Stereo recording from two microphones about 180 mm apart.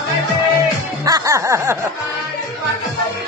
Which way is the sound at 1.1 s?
20° right (ahead or behind).